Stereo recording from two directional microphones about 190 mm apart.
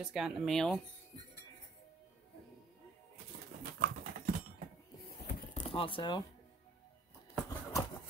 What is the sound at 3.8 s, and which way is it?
Typing, 45° right (ahead or behind).